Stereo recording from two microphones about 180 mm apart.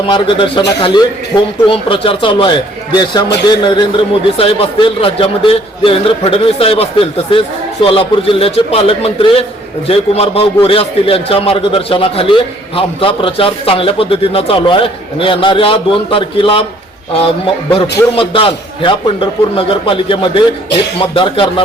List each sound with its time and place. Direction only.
0.1 s a man's voice: 25° left (ahead or behind)